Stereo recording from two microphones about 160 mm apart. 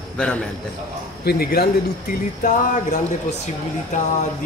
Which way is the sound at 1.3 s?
75° left (ahead or behind).